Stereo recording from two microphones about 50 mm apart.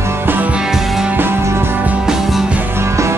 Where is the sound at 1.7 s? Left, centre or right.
Right.